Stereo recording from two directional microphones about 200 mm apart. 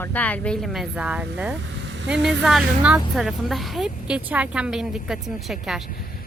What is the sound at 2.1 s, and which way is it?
A woman's voice, centre (ahead or behind).